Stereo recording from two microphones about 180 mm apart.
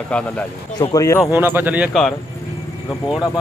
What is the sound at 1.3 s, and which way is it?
Speech, 10° right (ahead or behind).